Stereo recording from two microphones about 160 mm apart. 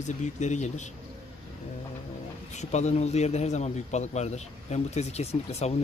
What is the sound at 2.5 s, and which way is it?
Speech, 45° left (ahead or behind).